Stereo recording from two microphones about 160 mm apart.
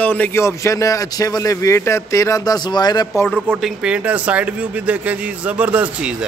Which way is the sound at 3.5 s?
5° right (ahead or behind).